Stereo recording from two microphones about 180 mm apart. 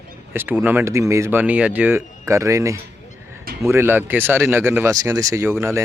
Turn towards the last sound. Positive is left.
turn(degrees=-15)  # may be behind; listen again after turning